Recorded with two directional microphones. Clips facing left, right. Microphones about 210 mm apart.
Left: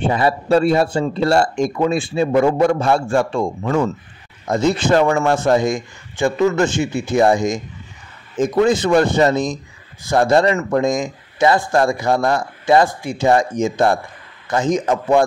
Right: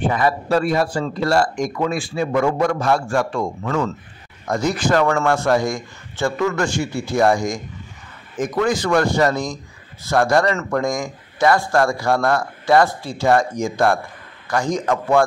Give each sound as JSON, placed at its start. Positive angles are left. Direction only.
{"t": 0.0, "sound": "speech", "side_deg": 30}